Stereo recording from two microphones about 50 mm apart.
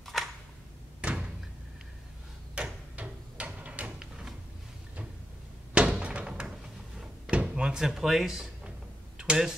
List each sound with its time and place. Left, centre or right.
0.0 s a sound: centre
1.0 s door: centre
2.5 s a sound: right
5.8 s door: right
7.0 s drawer open or close: right
9.2 s speech: centre